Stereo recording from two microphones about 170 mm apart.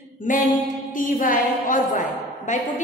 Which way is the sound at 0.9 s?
55° left (ahead or behind).